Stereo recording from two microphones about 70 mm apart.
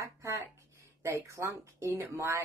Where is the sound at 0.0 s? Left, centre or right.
Right.